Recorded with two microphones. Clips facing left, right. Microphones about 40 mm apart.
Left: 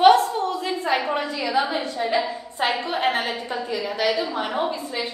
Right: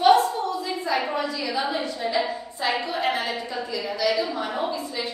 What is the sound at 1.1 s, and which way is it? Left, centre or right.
A woman's voice, left.